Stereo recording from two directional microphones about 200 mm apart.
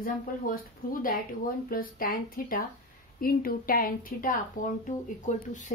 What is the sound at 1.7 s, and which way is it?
Speech, 45° left (ahead or behind).